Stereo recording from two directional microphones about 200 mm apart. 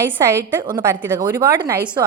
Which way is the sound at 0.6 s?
25° right (ahead or behind).